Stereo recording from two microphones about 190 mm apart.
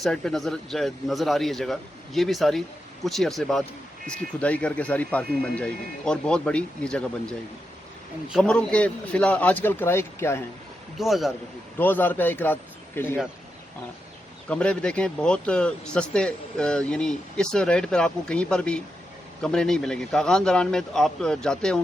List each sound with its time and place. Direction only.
0.0 s speech: 5° left (ahead or behind)
10.9 s speech: centre (ahead or behind)
11.8 s speech: 10° left (ahead or behind)
14.5 s speech: 5° left (ahead or behind)